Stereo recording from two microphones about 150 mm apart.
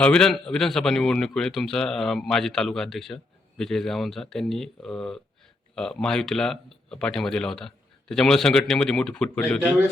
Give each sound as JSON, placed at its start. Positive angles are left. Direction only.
{"t": 0.0, "sound": "speech", "side_deg": 5}